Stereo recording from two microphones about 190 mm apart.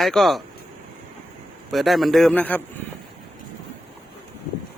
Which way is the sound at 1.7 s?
Centre (ahead or behind).